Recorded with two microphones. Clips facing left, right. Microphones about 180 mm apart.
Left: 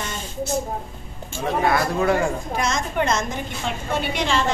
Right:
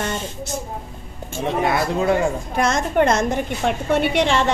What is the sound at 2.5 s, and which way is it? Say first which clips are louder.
A woman's voice: right 5 dB; 55° right (ahead or behind).